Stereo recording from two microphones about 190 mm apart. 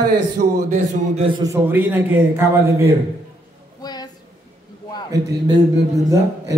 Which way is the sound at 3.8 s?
20° left (ahead or behind).